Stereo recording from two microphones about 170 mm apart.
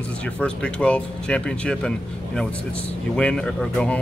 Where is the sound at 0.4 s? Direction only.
5° left (ahead or behind).